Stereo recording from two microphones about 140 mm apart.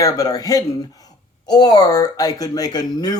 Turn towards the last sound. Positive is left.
turn(degrees=30)  # may be behind; listen again after turning